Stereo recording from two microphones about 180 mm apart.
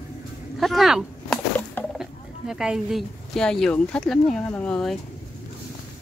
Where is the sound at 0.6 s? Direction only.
Centre (ahead or behind).